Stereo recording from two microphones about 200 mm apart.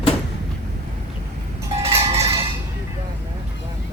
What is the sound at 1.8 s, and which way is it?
Cowbell, 30° right (ahead or behind).